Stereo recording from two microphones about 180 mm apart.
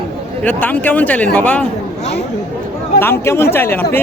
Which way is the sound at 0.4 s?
10° left (ahead or behind).